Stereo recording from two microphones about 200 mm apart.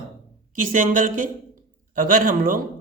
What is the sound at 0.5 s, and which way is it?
A man's voice, 40° right (ahead or behind).